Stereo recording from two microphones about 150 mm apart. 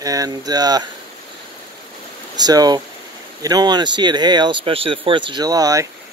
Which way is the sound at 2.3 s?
25° right (ahead or behind).